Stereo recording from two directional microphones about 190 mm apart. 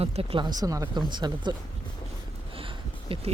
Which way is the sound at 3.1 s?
30° right (ahead or behind).